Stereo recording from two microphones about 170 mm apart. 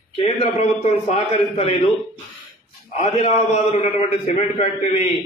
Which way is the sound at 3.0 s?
35° left (ahead or behind).